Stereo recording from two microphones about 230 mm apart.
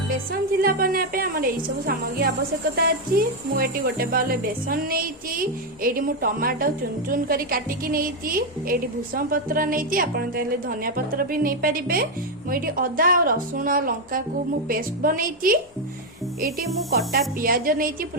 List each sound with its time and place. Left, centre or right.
0.6 s a woman's voice: right
17.1 s a woman's voice: right